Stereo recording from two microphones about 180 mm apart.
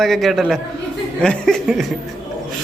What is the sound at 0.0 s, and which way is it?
A man's voice, centre (ahead or behind).